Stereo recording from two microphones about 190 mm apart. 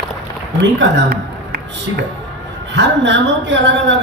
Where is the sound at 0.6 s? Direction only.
65° right (ahead or behind).